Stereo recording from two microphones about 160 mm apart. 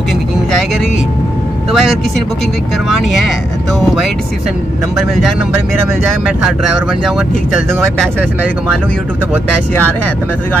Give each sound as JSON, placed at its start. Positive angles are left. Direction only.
{"t": 1.7, "sound": "speech", "side_deg": 0}